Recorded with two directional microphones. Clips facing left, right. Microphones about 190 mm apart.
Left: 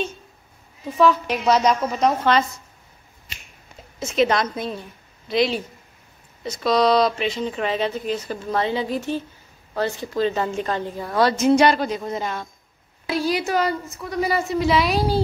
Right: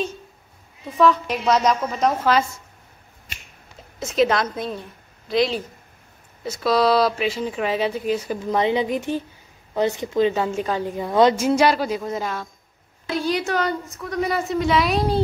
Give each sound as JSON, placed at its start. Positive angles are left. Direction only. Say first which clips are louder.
{"t": 0.9, "sound": "a woman's voice", "louder": "even", "side_deg": 0}
{"t": 4.0, "sound": "a woman's voice", "louder": "even", "side_deg": 0}
{"t": 11.3, "sound": "a woman's voice", "louder": "left 2 dB", "side_deg": -5}